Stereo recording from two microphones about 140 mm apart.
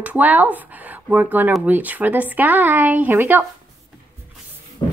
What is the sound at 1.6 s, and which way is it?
Speech, 10° right (ahead or behind).